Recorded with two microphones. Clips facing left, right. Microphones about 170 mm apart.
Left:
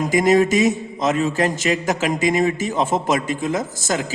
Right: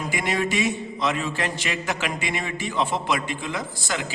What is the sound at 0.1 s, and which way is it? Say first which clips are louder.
A man's voice: left 11 dB; 40° left (ahead or behind).